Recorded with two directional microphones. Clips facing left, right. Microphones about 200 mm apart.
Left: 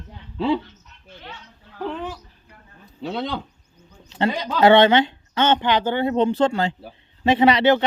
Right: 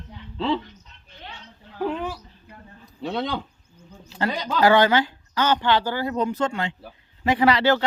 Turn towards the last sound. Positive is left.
turn(degrees=20)  # may be behind; listen again after turning